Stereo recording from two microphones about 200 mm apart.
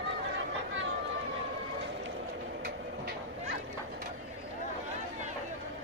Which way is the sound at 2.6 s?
50° right (ahead or behind).